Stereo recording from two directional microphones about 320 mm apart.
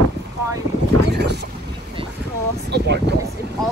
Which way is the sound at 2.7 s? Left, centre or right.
Right.